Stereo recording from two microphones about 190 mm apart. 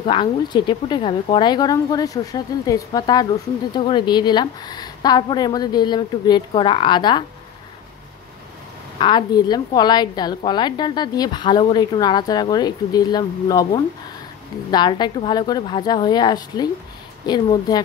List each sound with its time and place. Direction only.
0.0 s speech: 25° left (ahead or behind)
8.9 s speech: 25° left (ahead or behind)
14.7 s speech: 25° left (ahead or behind)